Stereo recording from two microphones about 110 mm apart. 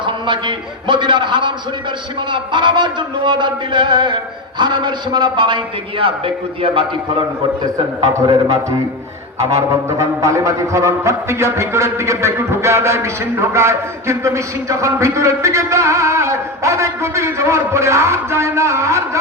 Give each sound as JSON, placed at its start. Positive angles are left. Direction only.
{"t": 0.0, "sound": "speech", "side_deg": -45}
{"t": 8.0, "sound": "a man's voice", "side_deg": -35}
{"t": 9.4, "sound": "music", "side_deg": -25}